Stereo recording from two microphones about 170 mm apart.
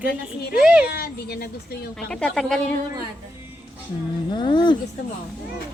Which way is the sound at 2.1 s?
5° left (ahead or behind).